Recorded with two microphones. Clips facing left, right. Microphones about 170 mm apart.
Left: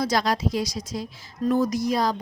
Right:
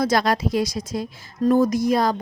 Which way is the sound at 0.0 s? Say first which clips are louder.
Right 3 dB; 55° right (ahead or behind).